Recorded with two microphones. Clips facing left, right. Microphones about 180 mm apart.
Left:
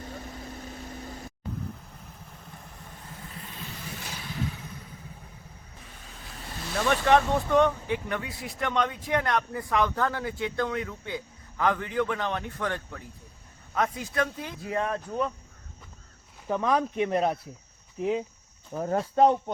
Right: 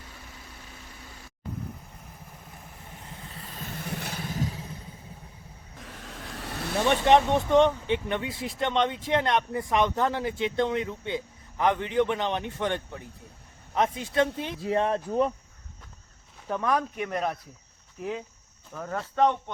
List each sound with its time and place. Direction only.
0.0 s vehicle: 40° left (ahead or behind)
3.8 s vehicle: 60° right (ahead or behind)
4.3 s vehicle: 40° right (ahead or behind)
5.8 s vehicle: 80° right; by 6.7 s 65° right (ahead or behind)
6.7 s speech: 25° right (ahead or behind)
16.5 s speech: 15° left (ahead or behind)
16.9 s speech: 30° left (ahead or behind)
18.7 s speech: 30° left (ahead or behind)